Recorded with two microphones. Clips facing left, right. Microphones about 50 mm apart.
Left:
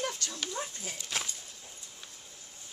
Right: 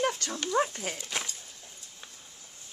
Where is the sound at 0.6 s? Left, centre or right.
Right.